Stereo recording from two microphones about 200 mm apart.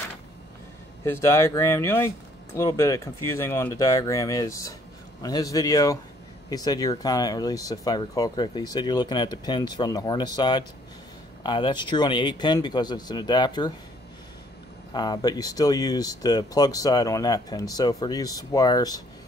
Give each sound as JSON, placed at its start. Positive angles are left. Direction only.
{"t": 1.0, "sound": "speech", "side_deg": 15}
{"t": 14.9, "sound": "speech", "side_deg": 20}